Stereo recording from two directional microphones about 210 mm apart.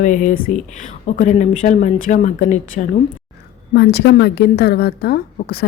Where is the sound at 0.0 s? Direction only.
35° left (ahead or behind).